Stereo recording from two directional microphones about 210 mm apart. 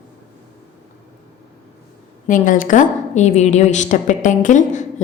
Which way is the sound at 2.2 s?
40° left (ahead or behind).